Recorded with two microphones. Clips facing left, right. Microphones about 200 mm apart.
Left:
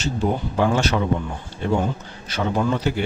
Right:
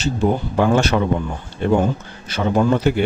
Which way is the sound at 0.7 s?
50° right (ahead or behind).